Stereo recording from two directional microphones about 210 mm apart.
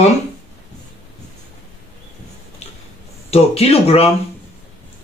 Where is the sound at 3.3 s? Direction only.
30° left (ahead or behind).